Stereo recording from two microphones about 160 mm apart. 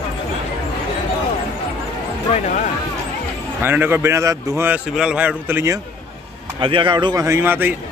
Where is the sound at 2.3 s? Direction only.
50° left (ahead or behind).